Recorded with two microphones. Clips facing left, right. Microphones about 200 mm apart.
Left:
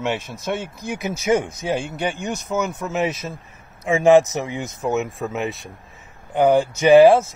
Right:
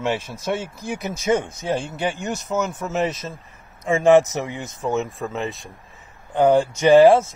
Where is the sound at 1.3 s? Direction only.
10° left (ahead or behind).